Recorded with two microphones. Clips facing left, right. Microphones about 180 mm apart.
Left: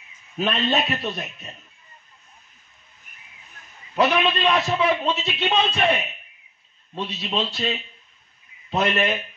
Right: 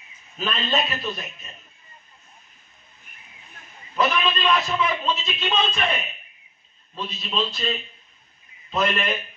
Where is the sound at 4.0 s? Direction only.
70° left (ahead or behind).